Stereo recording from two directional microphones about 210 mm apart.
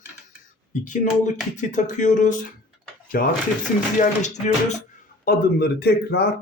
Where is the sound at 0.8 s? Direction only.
35° left (ahead or behind).